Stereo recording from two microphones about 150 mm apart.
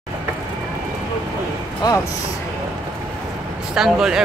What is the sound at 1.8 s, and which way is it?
Speech, 25° left (ahead or behind).